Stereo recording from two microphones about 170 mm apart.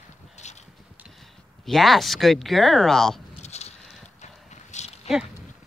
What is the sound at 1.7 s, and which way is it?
Speech, centre (ahead or behind).